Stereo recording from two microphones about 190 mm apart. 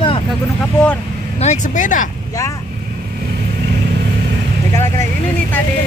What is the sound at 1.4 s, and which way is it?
Speech, 40° left (ahead or behind).